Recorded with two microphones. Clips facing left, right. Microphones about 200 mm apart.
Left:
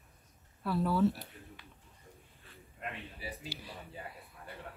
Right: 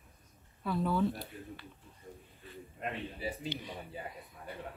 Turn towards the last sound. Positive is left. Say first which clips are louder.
# right 6 dB
turn(degrees=5)  # may be behind; listen again after turning